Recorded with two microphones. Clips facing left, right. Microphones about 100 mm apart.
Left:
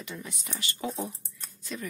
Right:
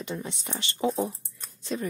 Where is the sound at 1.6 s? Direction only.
30° right (ahead or behind).